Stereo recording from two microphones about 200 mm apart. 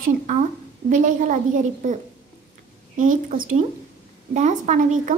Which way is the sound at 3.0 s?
40° right (ahead or behind).